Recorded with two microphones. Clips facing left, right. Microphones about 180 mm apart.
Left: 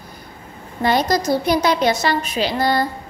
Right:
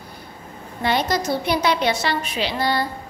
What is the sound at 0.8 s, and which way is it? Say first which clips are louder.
A woman's voice: left 4 dB; 40° left (ahead or behind).